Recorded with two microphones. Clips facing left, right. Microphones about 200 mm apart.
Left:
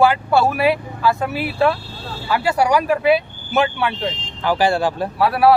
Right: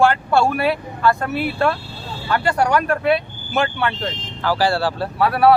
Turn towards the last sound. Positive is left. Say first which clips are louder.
# even
turn(degrees=0)  # may be behind; listen again after turning